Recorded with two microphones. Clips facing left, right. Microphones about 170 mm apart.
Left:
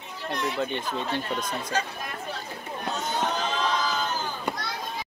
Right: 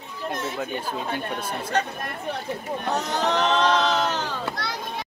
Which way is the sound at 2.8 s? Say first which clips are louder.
Right 3 dB; 70° right (ahead or behind).